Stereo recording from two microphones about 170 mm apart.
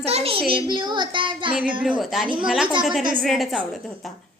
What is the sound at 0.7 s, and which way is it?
Speech, 30° right (ahead or behind).